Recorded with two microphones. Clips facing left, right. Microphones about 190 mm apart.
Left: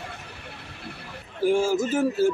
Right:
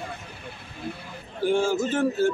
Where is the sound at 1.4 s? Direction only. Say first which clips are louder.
Left 1 dB; 5° left (ahead or behind).